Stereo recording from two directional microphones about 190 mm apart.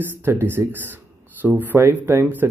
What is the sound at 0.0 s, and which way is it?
Speech, 10° right (ahead or behind).